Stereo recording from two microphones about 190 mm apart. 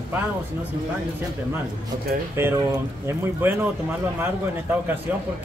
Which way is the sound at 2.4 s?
15° right (ahead or behind).